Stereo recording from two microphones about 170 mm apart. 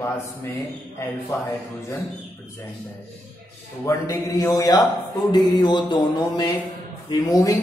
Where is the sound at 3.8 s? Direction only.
20° left (ahead or behind).